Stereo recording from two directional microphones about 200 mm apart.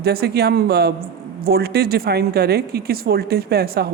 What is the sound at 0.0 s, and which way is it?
Speech, 55° right (ahead or behind).